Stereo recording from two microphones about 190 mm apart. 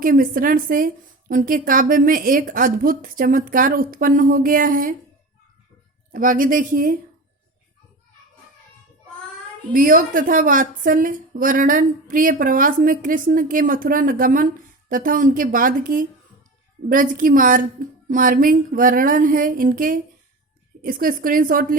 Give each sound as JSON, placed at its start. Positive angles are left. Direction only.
{"t": 0.0, "sound": "a woman's voice", "side_deg": -45}
{"t": 6.1, "sound": "a woman's voice", "side_deg": -45}
{"t": 9.7, "sound": "a woman's voice", "side_deg": -45}